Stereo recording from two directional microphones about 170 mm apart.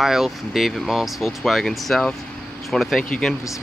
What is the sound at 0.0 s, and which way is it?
Speech, centre (ahead or behind).